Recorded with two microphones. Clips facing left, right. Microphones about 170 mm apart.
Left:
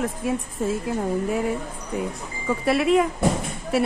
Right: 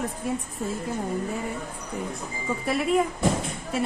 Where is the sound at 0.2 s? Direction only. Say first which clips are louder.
Left 4 dB; 90° left.